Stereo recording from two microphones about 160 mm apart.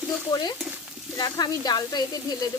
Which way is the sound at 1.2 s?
25° left (ahead or behind).